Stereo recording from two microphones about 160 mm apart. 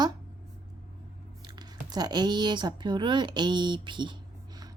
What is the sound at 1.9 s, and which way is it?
Speech, 25° right (ahead or behind).